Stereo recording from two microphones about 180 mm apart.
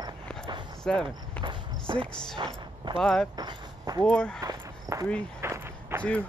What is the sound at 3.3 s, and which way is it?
Speech, 20° right (ahead or behind).